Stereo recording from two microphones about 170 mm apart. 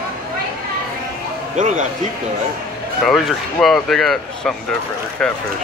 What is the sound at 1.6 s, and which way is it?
Speech, 50° right (ahead or behind).